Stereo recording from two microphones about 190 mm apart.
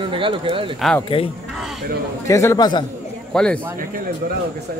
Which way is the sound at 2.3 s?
15° left (ahead or behind).